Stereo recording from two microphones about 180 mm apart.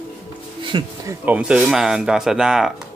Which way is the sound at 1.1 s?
10° right (ahead or behind).